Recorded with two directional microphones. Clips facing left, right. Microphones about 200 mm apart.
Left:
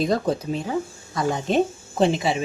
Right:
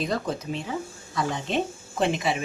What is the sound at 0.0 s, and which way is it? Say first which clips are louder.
Speech: left 6 dB; 35° left (ahead or behind).